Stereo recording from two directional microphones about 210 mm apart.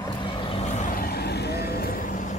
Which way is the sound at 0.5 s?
30° left (ahead or behind).